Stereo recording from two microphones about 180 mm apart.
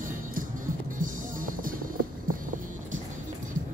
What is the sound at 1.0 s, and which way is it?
Music, 50° right (ahead or behind).